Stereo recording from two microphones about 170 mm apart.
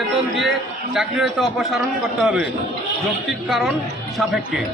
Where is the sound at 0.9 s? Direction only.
Centre (ahead or behind).